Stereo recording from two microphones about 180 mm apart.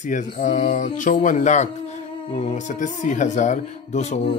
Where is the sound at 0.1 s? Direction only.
45° left (ahead or behind).